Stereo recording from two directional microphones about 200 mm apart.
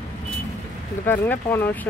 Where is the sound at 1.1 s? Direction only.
10° left (ahead or behind).